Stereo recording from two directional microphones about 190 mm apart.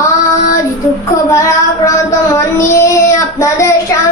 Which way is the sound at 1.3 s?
15° left (ahead or behind).